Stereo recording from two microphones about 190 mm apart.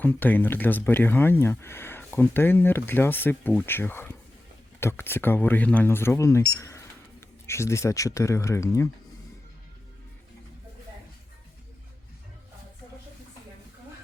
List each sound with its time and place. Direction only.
0.0 s speech: 10° left (ahead or behind)